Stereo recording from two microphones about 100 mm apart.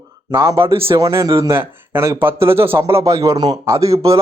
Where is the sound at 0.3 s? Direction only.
30° right (ahead or behind).